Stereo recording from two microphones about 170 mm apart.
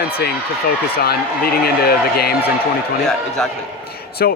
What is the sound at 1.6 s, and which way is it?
Speech, 65° left (ahead or behind).